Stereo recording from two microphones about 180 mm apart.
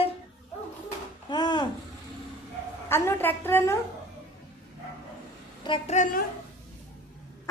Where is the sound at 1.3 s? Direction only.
25° left (ahead or behind).